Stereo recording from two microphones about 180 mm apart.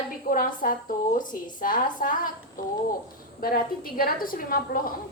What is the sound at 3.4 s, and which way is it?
A woman's voice, 55° left (ahead or behind).